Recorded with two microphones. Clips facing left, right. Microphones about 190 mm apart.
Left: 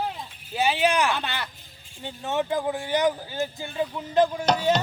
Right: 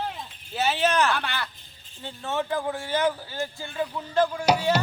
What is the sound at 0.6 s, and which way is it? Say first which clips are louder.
Speech: left 1 dB; 10° left (ahead or behind).